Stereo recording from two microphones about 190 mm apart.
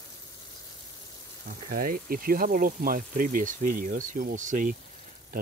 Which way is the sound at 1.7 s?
50° right (ahead or behind).